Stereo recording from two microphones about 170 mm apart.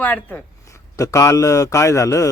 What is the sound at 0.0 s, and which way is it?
A man's voice, 10° left (ahead or behind).